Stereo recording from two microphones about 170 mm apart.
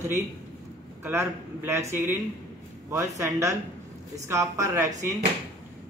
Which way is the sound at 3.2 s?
20° right (ahead or behind).